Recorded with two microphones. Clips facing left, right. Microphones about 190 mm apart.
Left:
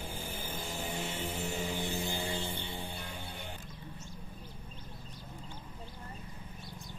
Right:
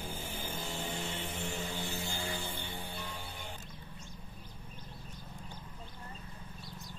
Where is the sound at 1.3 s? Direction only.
15° left (ahead or behind).